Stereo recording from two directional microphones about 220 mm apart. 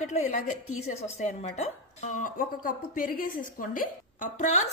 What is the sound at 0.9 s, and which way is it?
A woman's voice, 30° left (ahead or behind).